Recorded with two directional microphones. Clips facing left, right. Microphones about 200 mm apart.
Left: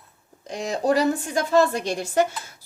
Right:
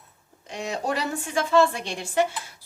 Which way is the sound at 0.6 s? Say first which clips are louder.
Left 7 dB; 35° left (ahead or behind).